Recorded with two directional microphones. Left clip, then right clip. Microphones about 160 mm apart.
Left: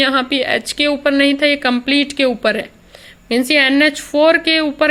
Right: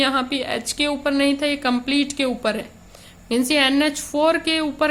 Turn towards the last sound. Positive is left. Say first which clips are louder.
# left 6 dB
turn(degrees=25)  # may be behind; listen again after turning